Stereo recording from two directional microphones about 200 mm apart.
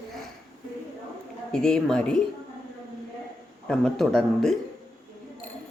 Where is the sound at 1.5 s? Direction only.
5° left (ahead or behind).